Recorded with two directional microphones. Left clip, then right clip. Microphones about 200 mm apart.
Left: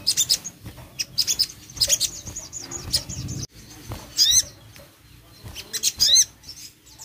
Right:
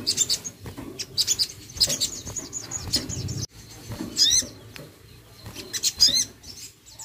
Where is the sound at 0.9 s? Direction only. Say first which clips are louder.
Left 2 dB; 15° right (ahead or behind).